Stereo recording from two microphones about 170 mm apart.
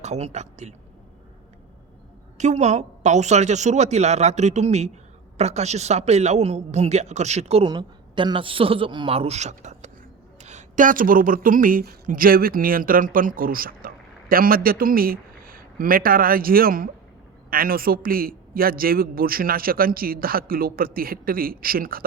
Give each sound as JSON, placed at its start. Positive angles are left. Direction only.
{"t": 0.0, "sound": "a man's voice", "side_deg": -40}
{"t": 2.4, "sound": "a woman's voice", "side_deg": -45}
{"t": 7.7, "sound": "a man's voice", "side_deg": -25}